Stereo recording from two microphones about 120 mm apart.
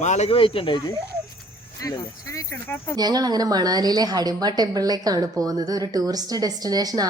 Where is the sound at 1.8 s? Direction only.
25° left (ahead or behind).